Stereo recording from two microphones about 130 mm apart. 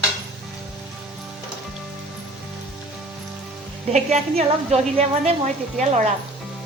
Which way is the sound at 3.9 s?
55° right (ahead or behind).